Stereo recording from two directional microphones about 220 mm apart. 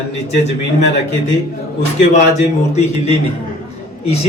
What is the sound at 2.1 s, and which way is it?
A man's voice, 30° left (ahead or behind).